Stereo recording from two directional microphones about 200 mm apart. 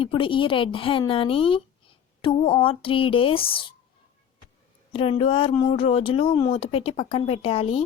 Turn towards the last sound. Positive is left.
turn(degrees=30)  # may be behind; listen again after turning